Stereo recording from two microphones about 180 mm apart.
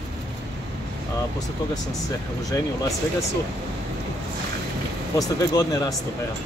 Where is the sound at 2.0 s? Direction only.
20° left (ahead or behind).